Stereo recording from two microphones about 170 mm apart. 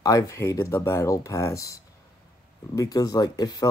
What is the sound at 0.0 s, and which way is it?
Speech, 20° left (ahead or behind).